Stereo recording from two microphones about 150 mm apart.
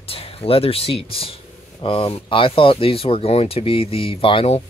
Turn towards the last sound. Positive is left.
turn(degrees=35)  # may be behind; listen again after turning